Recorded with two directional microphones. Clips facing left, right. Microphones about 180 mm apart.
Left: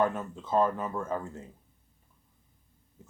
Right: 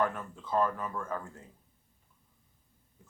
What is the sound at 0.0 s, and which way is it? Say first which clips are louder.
Speech: left 3 dB; 25° left (ahead or behind).